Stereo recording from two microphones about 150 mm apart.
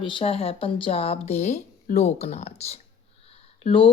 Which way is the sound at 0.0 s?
35° left (ahead or behind).